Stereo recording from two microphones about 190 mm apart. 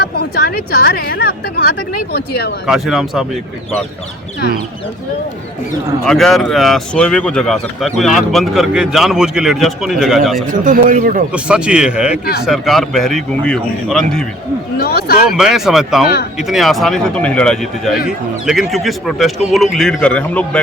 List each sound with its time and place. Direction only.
0.0 s a woman's voice: 55° left (ahead or behind)
2.6 s speech: centre (ahead or behind)
6.1 s speech: centre (ahead or behind)
10.5 s speech: 45° right (ahead or behind)
11.3 s speech: 5° right (ahead or behind)
14.8 s speech: 55° left (ahead or behind)
15.3 s speech: centre (ahead or behind)